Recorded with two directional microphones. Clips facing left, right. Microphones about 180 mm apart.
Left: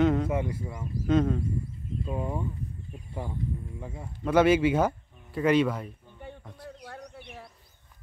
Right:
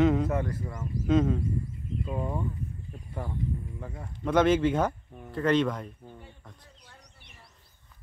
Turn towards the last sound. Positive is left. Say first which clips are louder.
# left 14 dB
turn(degrees=60)  # may be behind; listen again after turning